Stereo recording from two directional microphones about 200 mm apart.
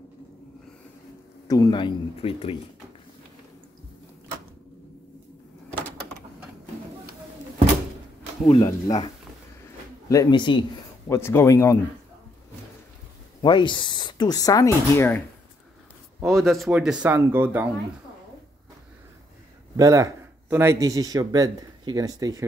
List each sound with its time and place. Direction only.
1.5 s speech: 20° left (ahead or behind)
8.5 s speech: 20° left (ahead or behind)
11.1 s speech: 10° left (ahead or behind)
13.4 s speech: 25° left (ahead or behind)
16.2 s speech: centre (ahead or behind)
19.8 s speech: 15° right (ahead or behind)